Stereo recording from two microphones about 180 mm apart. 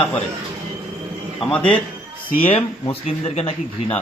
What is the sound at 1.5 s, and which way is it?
Speech, 10° left (ahead or behind).